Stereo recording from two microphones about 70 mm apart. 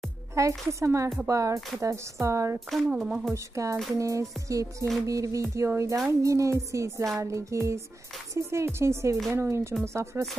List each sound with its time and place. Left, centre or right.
0.3 s speech: right
3.0 s speech: centre
3.5 s speech: right